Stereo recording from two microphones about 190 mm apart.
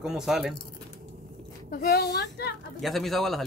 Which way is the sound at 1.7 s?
55° left (ahead or behind).